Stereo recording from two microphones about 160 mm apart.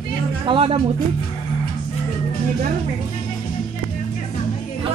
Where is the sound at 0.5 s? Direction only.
35° right (ahead or behind).